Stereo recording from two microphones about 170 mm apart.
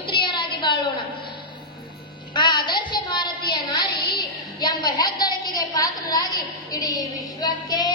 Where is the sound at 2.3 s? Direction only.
25° left (ahead or behind).